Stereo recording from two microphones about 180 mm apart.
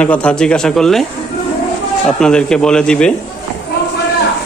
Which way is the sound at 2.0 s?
5° left (ahead or behind).